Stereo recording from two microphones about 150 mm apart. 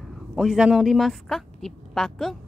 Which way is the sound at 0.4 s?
5° right (ahead or behind).